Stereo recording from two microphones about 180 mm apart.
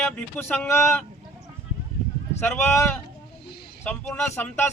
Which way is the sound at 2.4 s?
15° left (ahead or behind).